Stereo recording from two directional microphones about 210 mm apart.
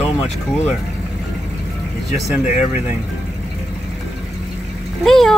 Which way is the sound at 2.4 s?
35° left (ahead or behind).